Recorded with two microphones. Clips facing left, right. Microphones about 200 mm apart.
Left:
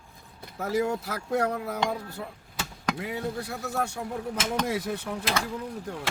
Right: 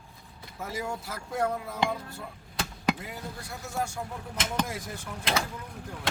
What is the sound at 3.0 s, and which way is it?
Speech, 65° left (ahead or behind).